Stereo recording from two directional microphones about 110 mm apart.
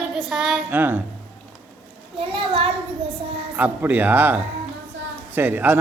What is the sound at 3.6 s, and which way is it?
A man's voice, 15° right (ahead or behind).